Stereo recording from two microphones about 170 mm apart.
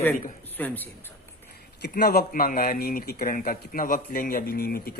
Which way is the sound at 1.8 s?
65° left (ahead or behind).